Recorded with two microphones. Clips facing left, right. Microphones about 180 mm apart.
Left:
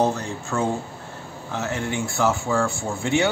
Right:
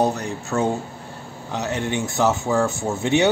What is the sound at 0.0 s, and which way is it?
Speech, 20° right (ahead or behind).